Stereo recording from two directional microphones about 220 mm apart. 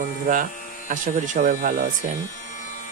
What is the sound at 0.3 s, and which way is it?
Speech, 35° right (ahead or behind).